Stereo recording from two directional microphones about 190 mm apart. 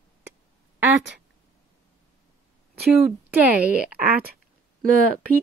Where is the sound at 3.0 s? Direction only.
Centre (ahead or behind).